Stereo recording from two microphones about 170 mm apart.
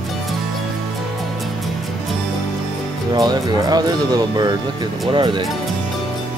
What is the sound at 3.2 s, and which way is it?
Speech, 25° right (ahead or behind).